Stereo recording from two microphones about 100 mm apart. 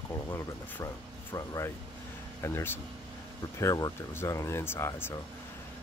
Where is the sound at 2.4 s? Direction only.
25° left (ahead or behind).